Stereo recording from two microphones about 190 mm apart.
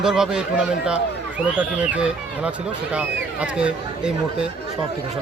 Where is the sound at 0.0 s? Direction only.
5° right (ahead or behind).